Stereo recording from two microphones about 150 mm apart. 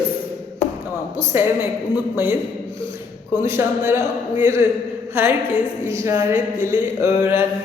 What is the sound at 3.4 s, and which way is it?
A man's voice, 15° right (ahead or behind).